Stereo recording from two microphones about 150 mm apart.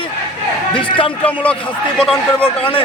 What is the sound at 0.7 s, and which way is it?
Speech, 35° left (ahead or behind).